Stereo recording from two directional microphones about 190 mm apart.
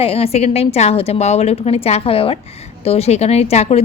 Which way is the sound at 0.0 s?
30° left (ahead or behind).